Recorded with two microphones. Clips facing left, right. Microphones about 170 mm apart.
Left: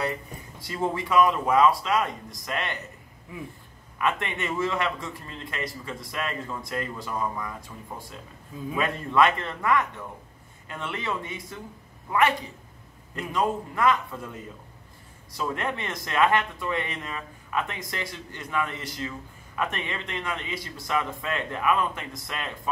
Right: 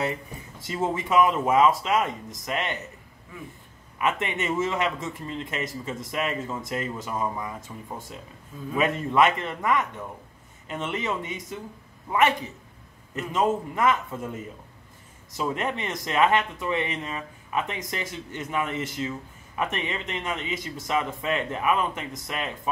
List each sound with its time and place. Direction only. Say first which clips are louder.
0.9 s speech: even; 20° right (ahead or behind)
4.0 s speech: right 1 dB; 20° right (ahead or behind)
8.7 s speech: right 1 dB; 20° right (ahead or behind)
15.3 s speech: right 2 dB; 20° right (ahead or behind)